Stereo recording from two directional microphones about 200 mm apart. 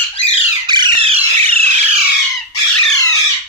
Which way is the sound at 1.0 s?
30° right (ahead or behind).